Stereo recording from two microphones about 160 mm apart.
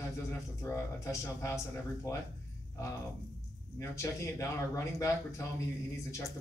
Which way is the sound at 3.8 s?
20° left (ahead or behind).